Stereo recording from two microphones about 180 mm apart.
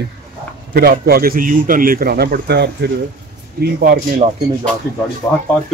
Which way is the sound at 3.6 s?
55° right (ahead or behind).